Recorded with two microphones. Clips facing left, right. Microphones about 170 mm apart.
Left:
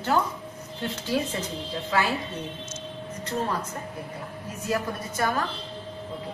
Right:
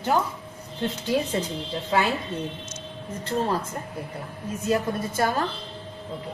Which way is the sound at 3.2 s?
30° right (ahead or behind).